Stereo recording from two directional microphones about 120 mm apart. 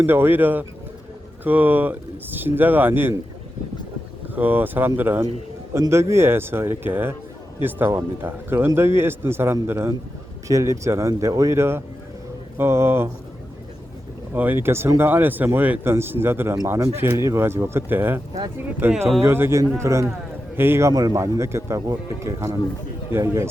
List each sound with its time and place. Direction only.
0.0 s speech: 15° right (ahead or behind)
4.4 s speech: 15° right (ahead or behind)
14.3 s speech: 15° right (ahead or behind)
20.9 s speech: 30° right (ahead or behind)